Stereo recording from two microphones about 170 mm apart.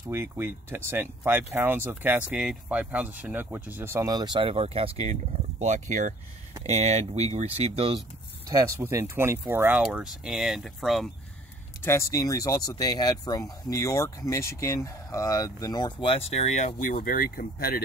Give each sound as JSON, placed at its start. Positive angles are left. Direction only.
{"t": 0.1, "sound": "speech", "side_deg": -10}
{"t": 8.5, "sound": "speech", "side_deg": -15}
{"t": 11.8, "sound": "speech", "side_deg": 15}
{"t": 16.9, "sound": "speech", "side_deg": 55}